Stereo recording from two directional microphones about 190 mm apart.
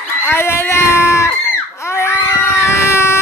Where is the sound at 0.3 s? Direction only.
15° left (ahead or behind).